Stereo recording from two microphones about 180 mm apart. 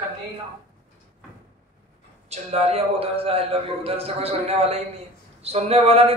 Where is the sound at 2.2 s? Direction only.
35° right (ahead or behind).